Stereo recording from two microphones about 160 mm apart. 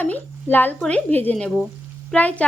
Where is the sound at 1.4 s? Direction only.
5° right (ahead or behind).